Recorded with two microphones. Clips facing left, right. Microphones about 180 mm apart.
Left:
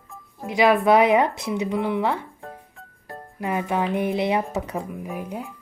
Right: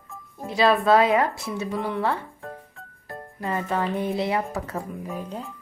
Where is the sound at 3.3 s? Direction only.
15° left (ahead or behind).